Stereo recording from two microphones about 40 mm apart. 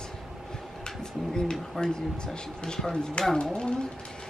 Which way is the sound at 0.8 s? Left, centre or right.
Centre.